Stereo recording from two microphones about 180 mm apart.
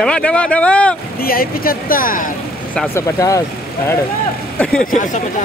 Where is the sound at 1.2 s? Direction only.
55° left (ahead or behind).